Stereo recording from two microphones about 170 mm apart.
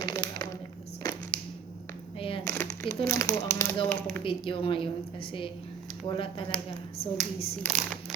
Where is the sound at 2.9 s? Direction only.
15° left (ahead or behind).